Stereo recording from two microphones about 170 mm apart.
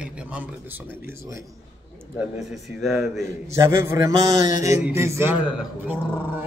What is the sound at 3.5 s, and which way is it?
Speech, 15° right (ahead or behind).